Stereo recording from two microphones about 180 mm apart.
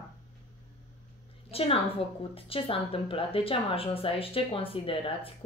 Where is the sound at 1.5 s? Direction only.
30° left (ahead or behind).